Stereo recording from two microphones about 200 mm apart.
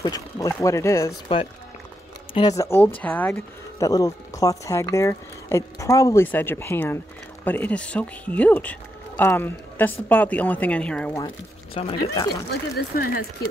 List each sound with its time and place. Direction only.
0.0 s speech: 15° left (ahead or behind)
2.3 s speech: 20° left (ahead or behind)
11.1 s speech: 25° left (ahead or behind)
12.7 s speech: 50° left (ahead or behind)